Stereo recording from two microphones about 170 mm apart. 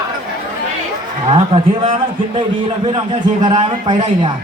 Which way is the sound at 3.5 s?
35° right (ahead or behind).